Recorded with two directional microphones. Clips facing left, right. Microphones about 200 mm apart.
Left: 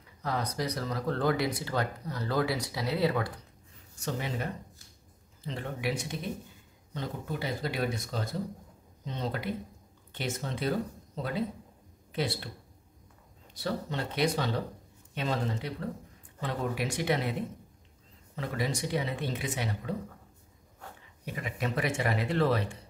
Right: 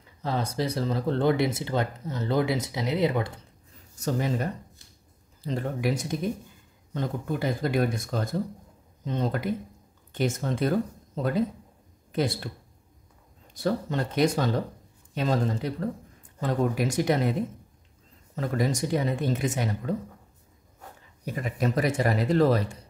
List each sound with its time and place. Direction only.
0.2 s speech: 25° right (ahead or behind)
4.0 s speech: 40° right (ahead or behind)
13.6 s speech: 45° right (ahead or behind)
21.3 s speech: 40° right (ahead or behind)